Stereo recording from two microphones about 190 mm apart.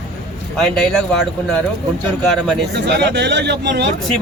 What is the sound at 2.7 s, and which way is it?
Speech, 65° right (ahead or behind).